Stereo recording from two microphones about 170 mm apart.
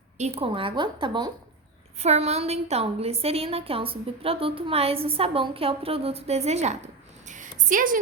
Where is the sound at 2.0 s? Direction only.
40° right (ahead or behind).